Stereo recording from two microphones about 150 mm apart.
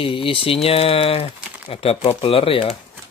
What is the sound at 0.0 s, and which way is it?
Speech, 35° left (ahead or behind).